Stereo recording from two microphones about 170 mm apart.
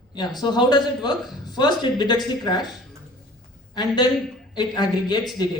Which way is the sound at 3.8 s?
25° left (ahead or behind).